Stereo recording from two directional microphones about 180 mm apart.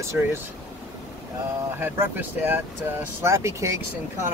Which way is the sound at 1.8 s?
10° right (ahead or behind).